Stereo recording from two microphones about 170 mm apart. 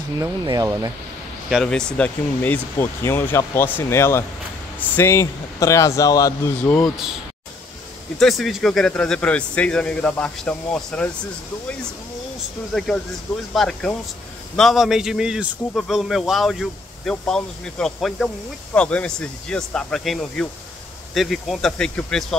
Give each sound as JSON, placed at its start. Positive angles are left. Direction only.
{"t": 0.2, "sound": "speech", "side_deg": -20}
{"t": 1.5, "sound": "speech", "side_deg": 5}
{"t": 8.2, "sound": "speech", "side_deg": 0}
{"t": 12.7, "sound": "speech", "side_deg": 0}